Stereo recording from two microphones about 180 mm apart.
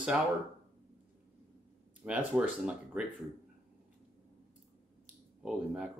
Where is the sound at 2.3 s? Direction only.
5° right (ahead or behind).